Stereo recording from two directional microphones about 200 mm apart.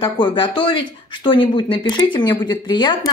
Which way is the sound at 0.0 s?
25° left (ahead or behind).